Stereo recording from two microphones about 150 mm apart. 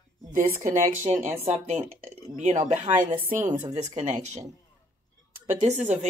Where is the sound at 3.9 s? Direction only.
45° right (ahead or behind).